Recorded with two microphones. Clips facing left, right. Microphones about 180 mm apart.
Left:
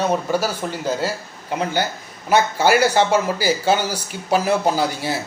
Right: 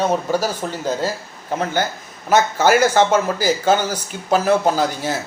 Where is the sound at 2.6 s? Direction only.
45° right (ahead or behind).